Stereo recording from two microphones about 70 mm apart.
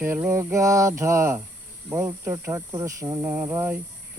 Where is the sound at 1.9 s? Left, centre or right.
Right.